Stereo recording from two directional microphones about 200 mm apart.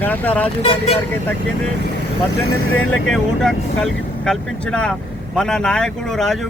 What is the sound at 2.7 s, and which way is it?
Speech, 85° left.